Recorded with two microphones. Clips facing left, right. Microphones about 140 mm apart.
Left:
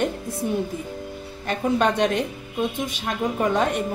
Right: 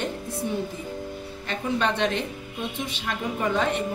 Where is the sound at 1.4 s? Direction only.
45° left (ahead or behind).